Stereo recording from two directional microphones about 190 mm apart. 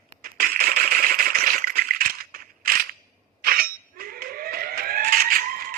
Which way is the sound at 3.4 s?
50° right (ahead or behind).